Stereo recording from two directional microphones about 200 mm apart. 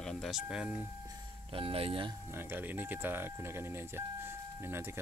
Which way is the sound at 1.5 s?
25° right (ahead or behind).